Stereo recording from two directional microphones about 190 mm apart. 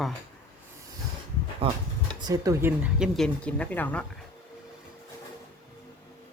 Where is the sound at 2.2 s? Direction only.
20° right (ahead or behind); by 4.1 s 10° left (ahead or behind).